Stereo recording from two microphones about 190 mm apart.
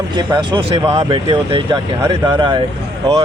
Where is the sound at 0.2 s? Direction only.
25° right (ahead or behind).